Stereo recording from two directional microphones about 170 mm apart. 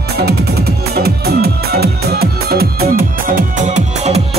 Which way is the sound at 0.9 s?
65° right (ahead or behind).